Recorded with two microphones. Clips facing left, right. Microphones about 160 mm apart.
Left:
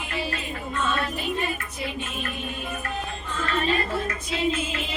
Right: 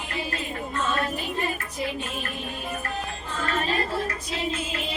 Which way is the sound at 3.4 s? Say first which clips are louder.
Left 2 dB; 40° right (ahead or behind).